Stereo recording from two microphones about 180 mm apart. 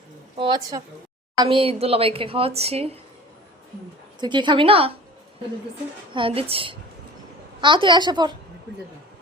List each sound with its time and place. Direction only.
0.3 s a woman's voice: 25° right (ahead or behind)
4.2 s a woman's voice: 25° right (ahead or behind)
6.1 s a woman's voice: 30° right (ahead or behind)